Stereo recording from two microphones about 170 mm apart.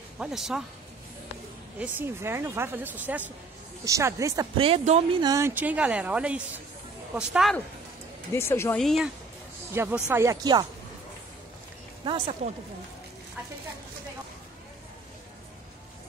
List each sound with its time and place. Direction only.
0.2 s speech: centre (ahead or behind)
1.8 s speech: 15° right (ahead or behind)
4.6 s speech: 35° right (ahead or behind)
5.2 s speech: 15° right (ahead or behind)
8.3 s speech: 15° left (ahead or behind)
8.8 s speech: centre (ahead or behind)
9.8 s speech: 10° right (ahead or behind)
12.0 s speech: 30° right (ahead or behind)